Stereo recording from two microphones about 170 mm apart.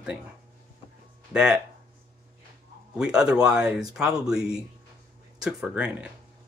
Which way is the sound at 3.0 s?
5° right (ahead or behind).